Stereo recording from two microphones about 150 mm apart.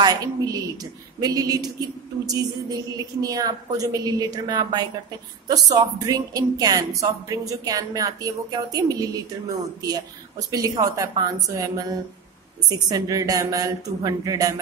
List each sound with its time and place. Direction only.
0.0 s speech: 25° right (ahead or behind)